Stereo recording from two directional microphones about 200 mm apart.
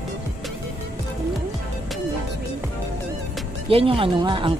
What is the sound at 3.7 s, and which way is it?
Speech, 30° right (ahead or behind).